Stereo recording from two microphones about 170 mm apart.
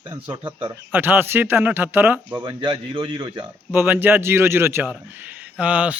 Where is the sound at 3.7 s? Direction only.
10° right (ahead or behind).